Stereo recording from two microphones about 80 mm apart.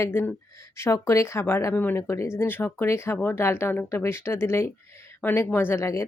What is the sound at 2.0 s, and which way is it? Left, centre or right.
Speech, left.